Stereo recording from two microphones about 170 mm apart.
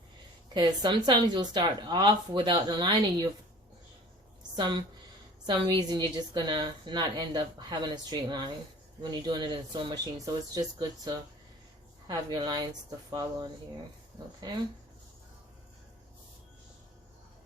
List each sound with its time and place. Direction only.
0.5 s a woman's voice: 25° right (ahead or behind)
4.5 s a woman's voice: 25° right (ahead or behind)